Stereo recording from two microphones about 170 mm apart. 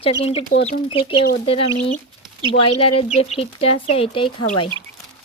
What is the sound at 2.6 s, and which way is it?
Speech, 35° left (ahead or behind).